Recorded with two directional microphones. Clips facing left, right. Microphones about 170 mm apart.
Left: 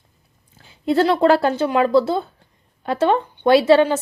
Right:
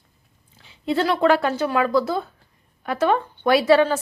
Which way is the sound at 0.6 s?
40° left (ahead or behind).